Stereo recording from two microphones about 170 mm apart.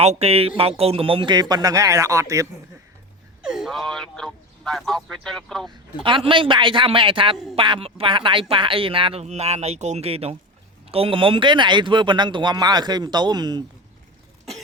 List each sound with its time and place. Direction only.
0.0 s speech: 35° right (ahead or behind); by 2.5 s 20° right (ahead or behind)
3.4 s speech: 5° right (ahead or behind)
6.0 s speech: 30° right (ahead or behind)